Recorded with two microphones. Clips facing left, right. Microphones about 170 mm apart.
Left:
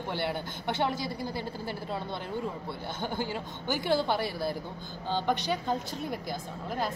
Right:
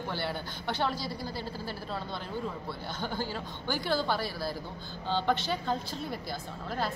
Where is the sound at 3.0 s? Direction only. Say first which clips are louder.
Left 2 dB; 20° left (ahead or behind).